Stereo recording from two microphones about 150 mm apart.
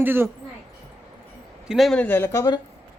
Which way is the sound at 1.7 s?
Centre (ahead or behind).